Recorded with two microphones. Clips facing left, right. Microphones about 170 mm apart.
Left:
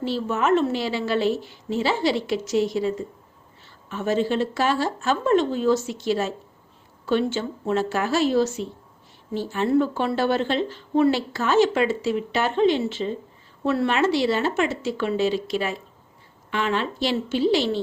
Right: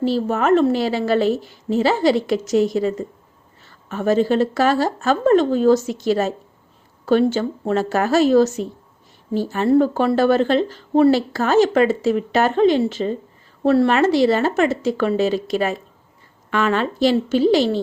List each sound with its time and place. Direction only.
0.0 s speech: 40° right (ahead or behind)